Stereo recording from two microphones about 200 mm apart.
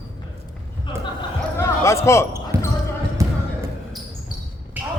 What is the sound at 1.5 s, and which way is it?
Basketball bounce, 15° left (ahead or behind).